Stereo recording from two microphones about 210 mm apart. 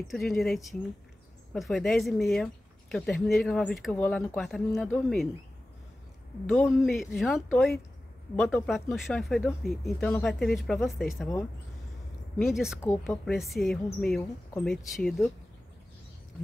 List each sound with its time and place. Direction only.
0.1 s speech: centre (ahead or behind)
6.4 s speech: 5° left (ahead or behind)
12.4 s speech: centre (ahead or behind)
12.8 s speech: 10° left (ahead or behind)
13.2 s speech: centre (ahead or behind)